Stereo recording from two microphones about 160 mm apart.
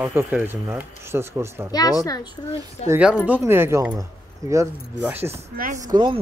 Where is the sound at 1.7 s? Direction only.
25° left (ahead or behind).